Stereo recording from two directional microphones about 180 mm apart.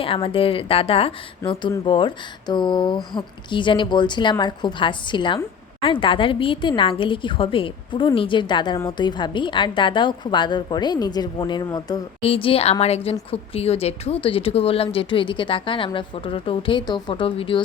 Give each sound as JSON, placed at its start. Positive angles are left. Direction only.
{"t": 0.0, "sound": "a woman's voice", "side_deg": 30}
{"t": 1.4, "sound": "speech", "side_deg": 15}
{"t": 1.8, "sound": "a woman's voice", "side_deg": 25}